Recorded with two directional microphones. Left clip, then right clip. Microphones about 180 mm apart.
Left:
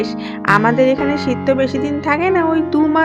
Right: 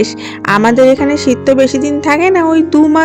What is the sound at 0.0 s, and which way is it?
A woman's voice, 55° right (ahead or behind).